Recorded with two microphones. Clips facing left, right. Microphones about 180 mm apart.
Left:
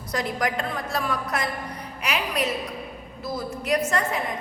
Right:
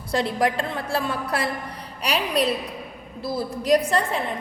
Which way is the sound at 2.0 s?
35° right (ahead or behind).